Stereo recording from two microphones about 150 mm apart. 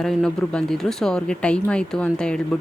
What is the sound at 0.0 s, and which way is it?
Speech, 5° left (ahead or behind).